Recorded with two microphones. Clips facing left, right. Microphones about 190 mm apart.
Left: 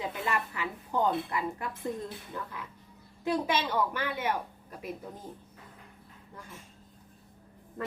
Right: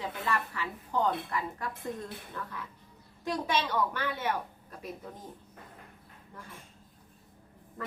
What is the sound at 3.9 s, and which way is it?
Speech, 10° left (ahead or behind).